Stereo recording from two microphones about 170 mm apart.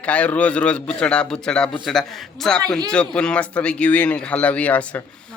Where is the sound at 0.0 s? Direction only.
10° left (ahead or behind).